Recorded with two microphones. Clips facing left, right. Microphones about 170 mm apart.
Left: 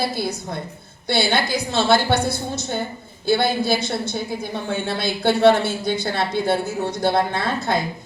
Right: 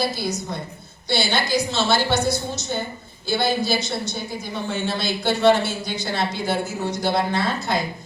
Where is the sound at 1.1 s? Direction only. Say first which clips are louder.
Left 1 dB; 55° left (ahead or behind).